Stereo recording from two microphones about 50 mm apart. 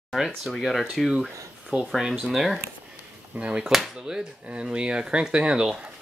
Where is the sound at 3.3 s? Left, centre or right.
Centre.